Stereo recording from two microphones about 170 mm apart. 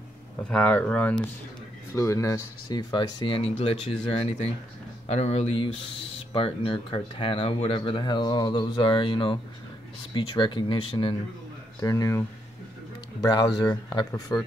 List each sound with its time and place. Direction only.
0.5 s speech: 5° left (ahead or behind); by 14.4 s 25° left (ahead or behind)